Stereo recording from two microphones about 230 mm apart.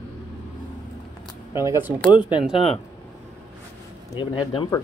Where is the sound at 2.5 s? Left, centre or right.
Left.